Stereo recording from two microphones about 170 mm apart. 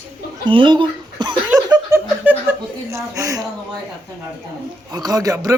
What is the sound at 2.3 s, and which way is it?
Chuckle, 10° right (ahead or behind).